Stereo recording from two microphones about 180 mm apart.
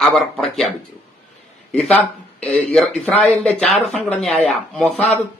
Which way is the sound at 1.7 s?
5° left (ahead or behind).